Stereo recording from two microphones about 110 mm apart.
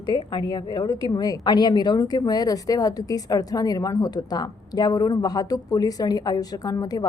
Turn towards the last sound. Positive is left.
turn(degrees=35)  # may be behind; listen again after turning